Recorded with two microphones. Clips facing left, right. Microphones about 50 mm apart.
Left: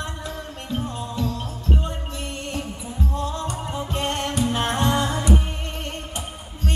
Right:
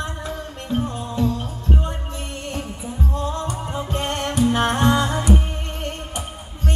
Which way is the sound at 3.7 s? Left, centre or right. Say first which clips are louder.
Right 1 dB; centre.